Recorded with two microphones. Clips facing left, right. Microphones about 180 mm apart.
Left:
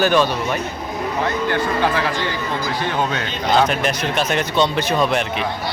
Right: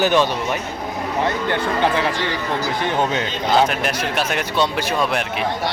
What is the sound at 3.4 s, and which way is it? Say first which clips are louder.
Speech: left 1 dB; 5° right (ahead or behind).